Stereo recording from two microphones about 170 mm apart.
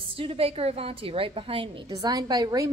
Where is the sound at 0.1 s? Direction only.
35° right (ahead or behind).